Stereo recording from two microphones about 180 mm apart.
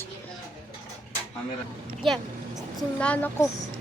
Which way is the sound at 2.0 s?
Centre (ahead or behind).